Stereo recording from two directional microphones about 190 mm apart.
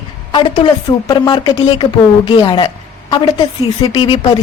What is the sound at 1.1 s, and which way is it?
A woman's voice, 25° left (ahead or behind).